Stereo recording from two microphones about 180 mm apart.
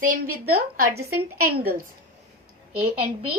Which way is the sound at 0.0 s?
50° right (ahead or behind).